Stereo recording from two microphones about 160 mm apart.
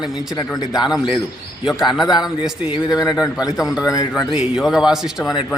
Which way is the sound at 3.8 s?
20° left (ahead or behind).